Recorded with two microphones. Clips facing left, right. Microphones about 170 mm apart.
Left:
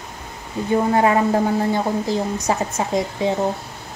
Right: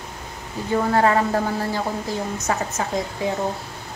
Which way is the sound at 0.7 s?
20° left (ahead or behind).